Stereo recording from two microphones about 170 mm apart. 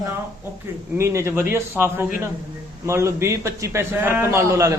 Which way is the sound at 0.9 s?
15° right (ahead or behind).